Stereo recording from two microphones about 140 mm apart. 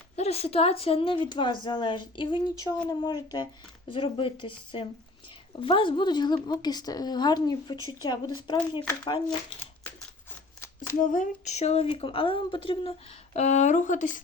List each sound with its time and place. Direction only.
0.2 s speech: 45° left (ahead or behind)
11.0 s speech: 65° left (ahead or behind)